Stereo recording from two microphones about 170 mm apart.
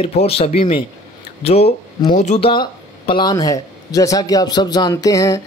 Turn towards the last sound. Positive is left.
turn(degrees=20)  # may be behind; listen again after turning